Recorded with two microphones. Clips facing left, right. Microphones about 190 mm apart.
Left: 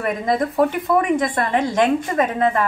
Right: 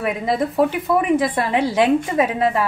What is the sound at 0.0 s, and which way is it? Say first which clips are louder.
A woman's voice: even; centre (ahead or behind).